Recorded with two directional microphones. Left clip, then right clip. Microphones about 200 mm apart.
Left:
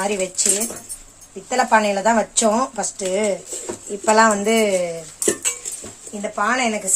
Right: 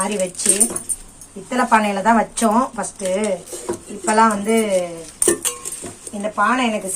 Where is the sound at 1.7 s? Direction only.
35° left (ahead or behind).